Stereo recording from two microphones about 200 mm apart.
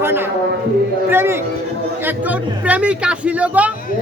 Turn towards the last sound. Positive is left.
turn(degrees=-5)  # may be behind; listen again after turning